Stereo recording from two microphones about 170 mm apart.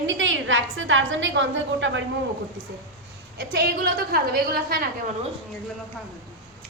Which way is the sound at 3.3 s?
65° right (ahead or behind).